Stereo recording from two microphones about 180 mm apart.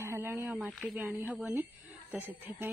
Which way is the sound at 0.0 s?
10° right (ahead or behind).